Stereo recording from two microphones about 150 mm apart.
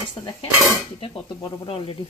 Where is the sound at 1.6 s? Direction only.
35° left (ahead or behind).